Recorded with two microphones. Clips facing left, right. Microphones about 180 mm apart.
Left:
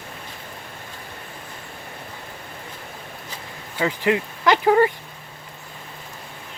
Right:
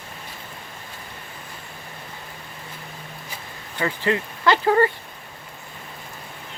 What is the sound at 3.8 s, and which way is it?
Speech, 15° left (ahead or behind).